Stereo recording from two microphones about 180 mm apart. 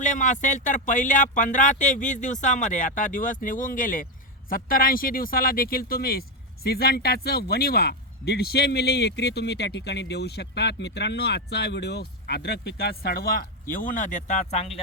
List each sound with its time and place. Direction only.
0.0 s speech: 45° left (ahead or behind)